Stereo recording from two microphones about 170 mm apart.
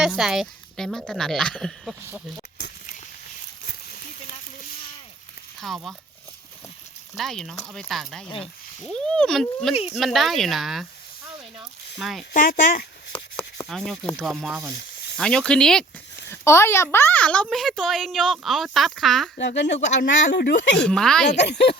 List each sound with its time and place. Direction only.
0.0 s speech: 5° right (ahead or behind)
5.5 s speech: centre (ahead or behind)
7.2 s speech: centre (ahead or behind)
11.9 s speech: centre (ahead or behind)
12.3 s speech: 50° left (ahead or behind)
13.1 s chopping: 5° left (ahead or behind)
15.2 s speech: 5° left (ahead or behind)
16.3 s speech: 15° left (ahead or behind)
19.4 s speech: 85° left
20.7 s speech: 5° left (ahead or behind)
21.4 s speech: 70° left (ahead or behind)